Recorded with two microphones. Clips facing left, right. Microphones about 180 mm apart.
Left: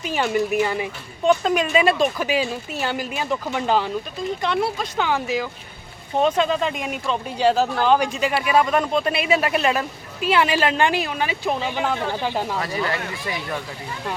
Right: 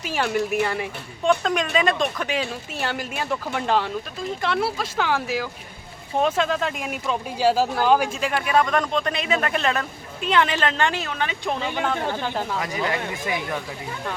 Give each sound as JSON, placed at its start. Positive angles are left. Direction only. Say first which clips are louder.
{"t": 0.0, "sound": "speech", "louder": "left 2 dB", "side_deg": 0}
{"t": 12.6, "sound": "speech", "louder": "even", "side_deg": -15}